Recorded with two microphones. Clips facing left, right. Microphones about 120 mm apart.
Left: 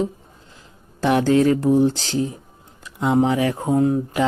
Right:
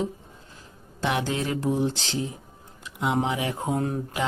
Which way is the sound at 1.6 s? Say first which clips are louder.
Left 8 dB; 35° left (ahead or behind).